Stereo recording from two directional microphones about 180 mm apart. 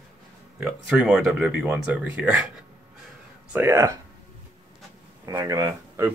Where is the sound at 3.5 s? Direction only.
15° right (ahead or behind).